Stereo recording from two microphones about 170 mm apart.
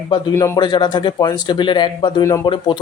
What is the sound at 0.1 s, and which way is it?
Speech, 20° left (ahead or behind).